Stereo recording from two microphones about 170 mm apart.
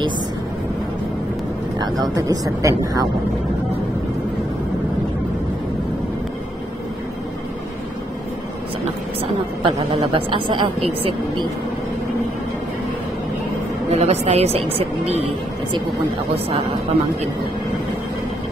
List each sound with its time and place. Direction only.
2.1 s a woman's voice: 20° right (ahead or behind)
9.7 s a woman's voice: 30° right (ahead or behind)
13.8 s a woman's voice: 40° right (ahead or behind)